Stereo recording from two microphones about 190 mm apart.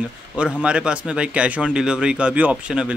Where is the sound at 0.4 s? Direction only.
5° right (ahead or behind).